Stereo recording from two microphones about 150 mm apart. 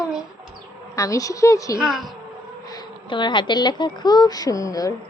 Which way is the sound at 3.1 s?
30° left (ahead or behind).